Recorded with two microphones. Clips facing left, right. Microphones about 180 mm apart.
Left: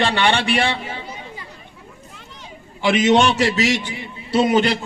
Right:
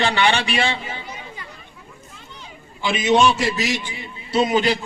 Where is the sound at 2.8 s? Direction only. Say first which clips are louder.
Left 2 dB; 70° left (ahead or behind).